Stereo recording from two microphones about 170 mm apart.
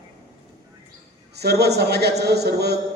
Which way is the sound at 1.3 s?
70° right (ahead or behind).